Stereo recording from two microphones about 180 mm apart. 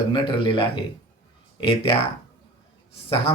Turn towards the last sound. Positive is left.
turn(degrees=30)  # may be behind; listen again after turning